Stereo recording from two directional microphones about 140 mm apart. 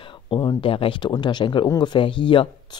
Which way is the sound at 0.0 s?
35° left (ahead or behind).